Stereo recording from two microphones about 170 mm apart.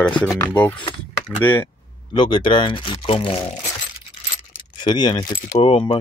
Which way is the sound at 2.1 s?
30° left (ahead or behind).